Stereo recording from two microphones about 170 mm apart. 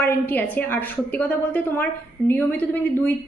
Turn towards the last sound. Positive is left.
turn(degrees=10)  # may be behind; listen again after turning